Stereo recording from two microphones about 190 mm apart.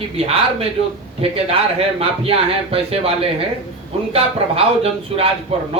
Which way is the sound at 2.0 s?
30° right (ahead or behind).